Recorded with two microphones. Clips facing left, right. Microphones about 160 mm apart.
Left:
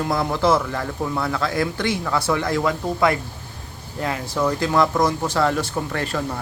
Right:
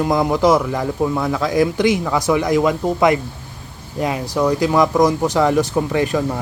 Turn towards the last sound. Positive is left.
turn(degrees=-15)  # may be behind; listen again after turning